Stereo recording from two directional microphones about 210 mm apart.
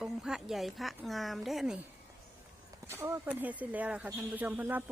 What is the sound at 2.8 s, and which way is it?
Speech, 10° right (ahead or behind).